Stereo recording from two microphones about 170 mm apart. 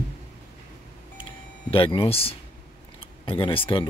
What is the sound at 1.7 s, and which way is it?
Speech, 30° left (ahead or behind).